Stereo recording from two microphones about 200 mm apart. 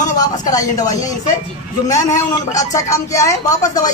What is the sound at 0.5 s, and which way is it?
Speech, 15° left (ahead or behind).